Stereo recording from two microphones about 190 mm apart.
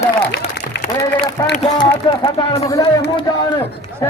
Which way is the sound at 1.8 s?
25° left (ahead or behind).